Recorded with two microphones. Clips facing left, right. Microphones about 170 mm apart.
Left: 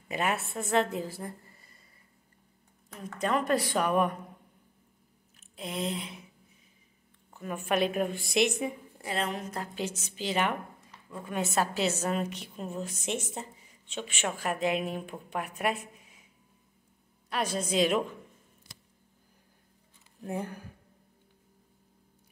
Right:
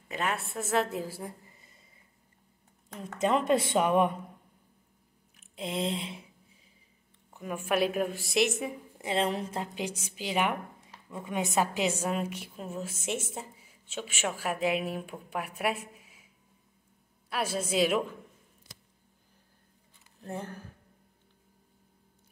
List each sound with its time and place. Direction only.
0.1 s a woman's voice: 10° left (ahead or behind); by 1.7 s 10° right (ahead or behind)
3.0 s a woman's voice: 25° right (ahead or behind)
5.6 s a woman's voice: 25° right (ahead or behind)
7.3 s a woman's voice: 10° right (ahead or behind)
8.9 s speech: 25° right (ahead or behind)
9.8 s a woman's voice: 10° right (ahead or behind)
17.3 s a woman's voice: 5° right (ahead or behind)
20.2 s speech: 10° left (ahead or behind)